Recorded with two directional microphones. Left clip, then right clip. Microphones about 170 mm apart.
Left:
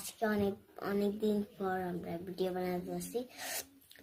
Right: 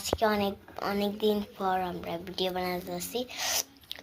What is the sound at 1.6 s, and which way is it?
Speech, 15° left (ahead or behind).